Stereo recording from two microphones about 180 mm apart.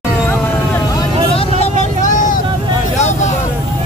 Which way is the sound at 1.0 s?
30° left (ahead or behind).